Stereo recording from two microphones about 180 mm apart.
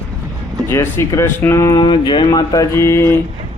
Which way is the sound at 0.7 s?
15° left (ahead or behind).